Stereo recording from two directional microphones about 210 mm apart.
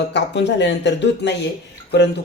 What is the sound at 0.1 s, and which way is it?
Speech, 55° left (ahead or behind).